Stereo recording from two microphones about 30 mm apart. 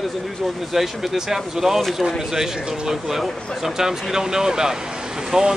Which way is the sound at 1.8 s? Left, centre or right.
Centre.